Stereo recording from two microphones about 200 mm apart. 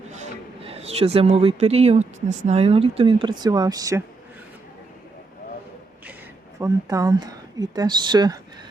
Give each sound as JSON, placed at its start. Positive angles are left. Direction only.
{"t": 0.1, "sound": "a sound", "side_deg": -30}
{"t": 2.5, "sound": "speech", "side_deg": -30}
{"t": 6.6, "sound": "speech", "side_deg": -15}